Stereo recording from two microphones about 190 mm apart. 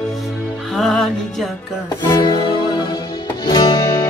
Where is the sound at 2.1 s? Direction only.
25° left (ahead or behind).